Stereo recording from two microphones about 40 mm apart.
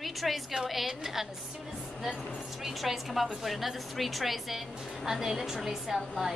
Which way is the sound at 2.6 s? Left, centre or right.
Centre.